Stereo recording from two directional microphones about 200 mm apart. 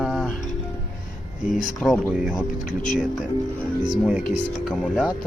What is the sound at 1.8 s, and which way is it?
Speech, centre (ahead or behind).